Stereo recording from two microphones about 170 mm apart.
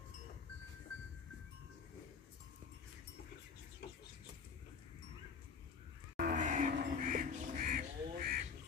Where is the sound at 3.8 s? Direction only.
65° left (ahead or behind).